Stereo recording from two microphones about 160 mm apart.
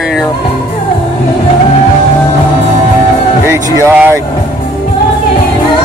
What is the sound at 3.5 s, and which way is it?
Speech, 15° right (ahead or behind).